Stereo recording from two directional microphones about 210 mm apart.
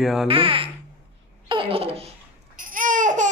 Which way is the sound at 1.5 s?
25° right (ahead or behind).